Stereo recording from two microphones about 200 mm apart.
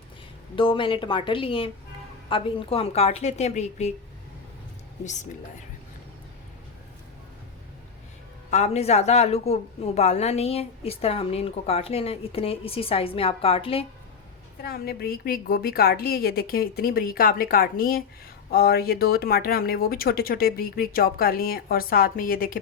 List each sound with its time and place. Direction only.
0.5 s a woman's voice: 25° left (ahead or behind)
8.4 s a woman's voice: 35° left (ahead or behind)
14.6 s speech: 50° left (ahead or behind)